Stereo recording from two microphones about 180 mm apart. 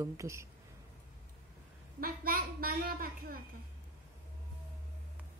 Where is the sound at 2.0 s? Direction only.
55° right (ahead or behind).